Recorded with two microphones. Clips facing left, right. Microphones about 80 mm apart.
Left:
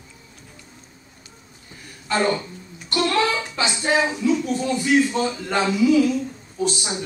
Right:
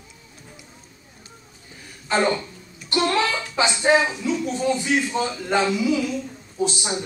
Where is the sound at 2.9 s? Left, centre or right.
Right.